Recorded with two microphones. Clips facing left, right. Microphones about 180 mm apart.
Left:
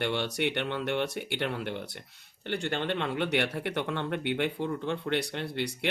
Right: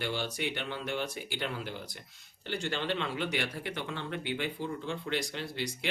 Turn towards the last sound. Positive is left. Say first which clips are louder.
# left 4 dB
turn(degrees=60)  # may be behind; listen again after turning